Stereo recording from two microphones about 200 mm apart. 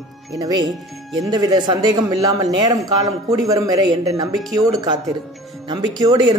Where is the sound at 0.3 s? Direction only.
20° right (ahead or behind).